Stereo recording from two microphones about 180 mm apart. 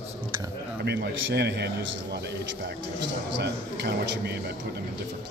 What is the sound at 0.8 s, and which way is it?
Speech, 70° right (ahead or behind).